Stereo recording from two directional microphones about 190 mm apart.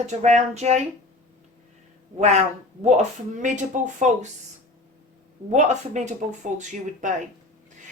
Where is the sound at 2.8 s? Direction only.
40° right (ahead or behind).